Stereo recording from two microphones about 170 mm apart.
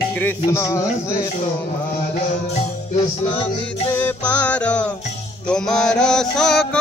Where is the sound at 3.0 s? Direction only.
35° left (ahead or behind).